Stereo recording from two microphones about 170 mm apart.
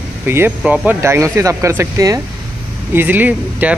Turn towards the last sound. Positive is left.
turn(degrees=-10)  # may be behind; listen again after turning